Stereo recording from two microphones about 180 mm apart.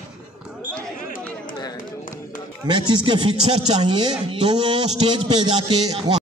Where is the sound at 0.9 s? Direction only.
50° left (ahead or behind).